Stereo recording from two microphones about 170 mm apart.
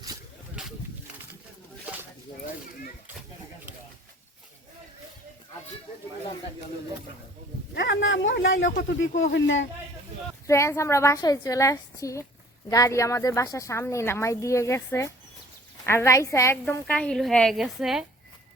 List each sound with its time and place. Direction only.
7.8 s a sound: 90° left
8.9 s speech: 90° left
10.4 s a woman's voice: 15° left (ahead or behind)
16.8 s a woman's voice: 5° left (ahead or behind)